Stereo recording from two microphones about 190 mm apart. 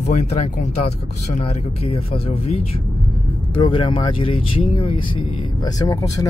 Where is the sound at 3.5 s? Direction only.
25° left (ahead or behind).